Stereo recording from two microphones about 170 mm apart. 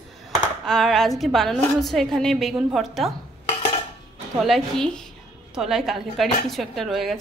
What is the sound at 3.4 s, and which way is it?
Dishes, 35° left (ahead or behind).